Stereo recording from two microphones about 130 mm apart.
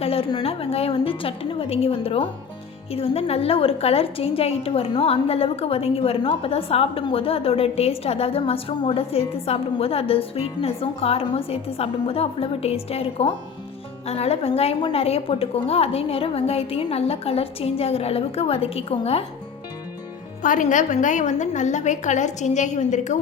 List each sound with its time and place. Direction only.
0.0 s a sound: 50° left (ahead or behind)
0.4 s a woman's voice: 50° left (ahead or behind)
20.4 s a woman's voice: 85° left; by 23.1 s 65° left (ahead or behind)